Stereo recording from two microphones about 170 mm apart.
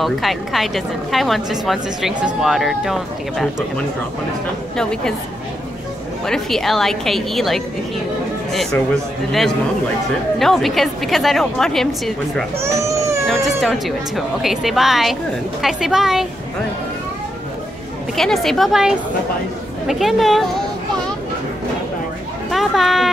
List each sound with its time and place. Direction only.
0.0 s a woman's voice: centre (ahead or behind)
6.2 s a woman's voice: centre (ahead or behind)
10.4 s a woman's voice: centre (ahead or behind)
12.5 s baby cry: 15° right (ahead or behind)
13.3 s a woman's voice: centre (ahead or behind)
18.1 s a woman's voice: centre (ahead or behind)
22.5 s a sound: centre (ahead or behind)